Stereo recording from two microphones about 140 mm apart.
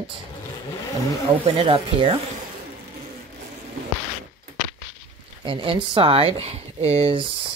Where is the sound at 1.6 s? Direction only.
40° right (ahead or behind).